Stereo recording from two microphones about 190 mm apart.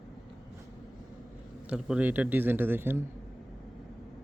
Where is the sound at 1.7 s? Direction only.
5° right (ahead or behind).